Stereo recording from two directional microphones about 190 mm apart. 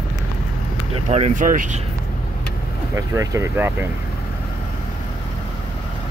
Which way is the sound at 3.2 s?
15° right (ahead or behind).